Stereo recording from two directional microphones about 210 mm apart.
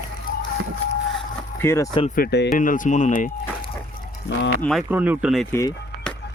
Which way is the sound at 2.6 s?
40° left (ahead or behind).